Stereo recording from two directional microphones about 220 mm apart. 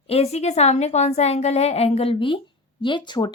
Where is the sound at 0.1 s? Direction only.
30° left (ahead or behind).